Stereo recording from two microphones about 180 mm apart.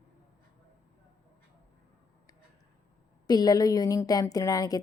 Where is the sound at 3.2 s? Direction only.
20° left (ahead or behind).